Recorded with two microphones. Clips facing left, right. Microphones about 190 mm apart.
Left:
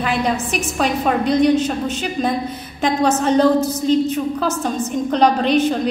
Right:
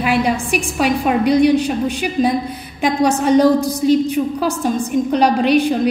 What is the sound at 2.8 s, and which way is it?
A woman's voice, 10° right (ahead or behind).